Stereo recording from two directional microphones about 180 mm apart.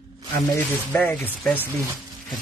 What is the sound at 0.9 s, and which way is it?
Speech, 5° left (ahead or behind).